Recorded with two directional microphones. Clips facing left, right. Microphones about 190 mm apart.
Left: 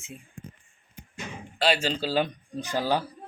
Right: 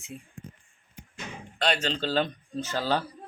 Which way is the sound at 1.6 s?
5° left (ahead or behind).